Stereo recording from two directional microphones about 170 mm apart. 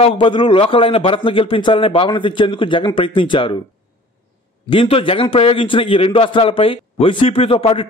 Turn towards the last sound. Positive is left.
turn(degrees=35)  # may be behind; listen again after turning